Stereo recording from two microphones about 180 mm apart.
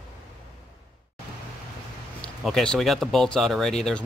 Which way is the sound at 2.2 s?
5° left (ahead or behind).